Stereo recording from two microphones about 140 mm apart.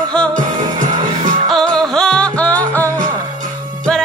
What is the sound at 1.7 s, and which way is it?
Music, 5° left (ahead or behind).